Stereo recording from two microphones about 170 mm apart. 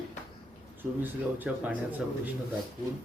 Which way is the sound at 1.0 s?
10° right (ahead or behind).